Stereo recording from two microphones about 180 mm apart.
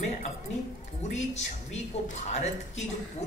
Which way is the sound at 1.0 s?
40° left (ahead or behind).